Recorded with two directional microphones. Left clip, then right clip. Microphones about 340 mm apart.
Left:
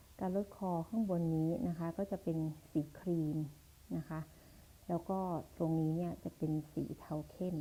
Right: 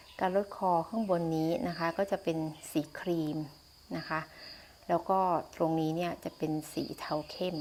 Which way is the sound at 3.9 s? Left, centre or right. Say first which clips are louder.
Right 10 dB; centre.